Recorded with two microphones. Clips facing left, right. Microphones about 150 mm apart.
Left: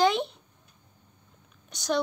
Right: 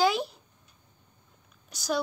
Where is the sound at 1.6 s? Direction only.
Centre (ahead or behind).